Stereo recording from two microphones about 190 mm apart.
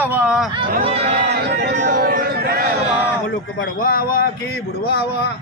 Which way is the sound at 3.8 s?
50° left (ahead or behind).